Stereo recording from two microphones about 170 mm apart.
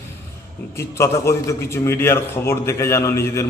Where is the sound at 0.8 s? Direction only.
15° left (ahead or behind).